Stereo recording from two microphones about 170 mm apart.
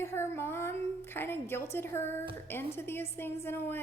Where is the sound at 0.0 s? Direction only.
15° left (ahead or behind).